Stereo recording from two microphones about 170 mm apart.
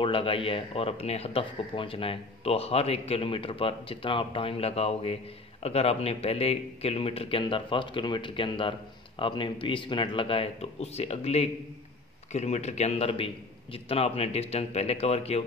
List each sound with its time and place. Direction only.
0.0 s speech: 30° left (ahead or behind)